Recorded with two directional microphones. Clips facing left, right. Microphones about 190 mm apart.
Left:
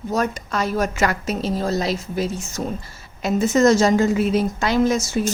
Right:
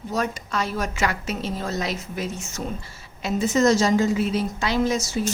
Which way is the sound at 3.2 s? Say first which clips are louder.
Left 4 dB; 45° left (ahead or behind).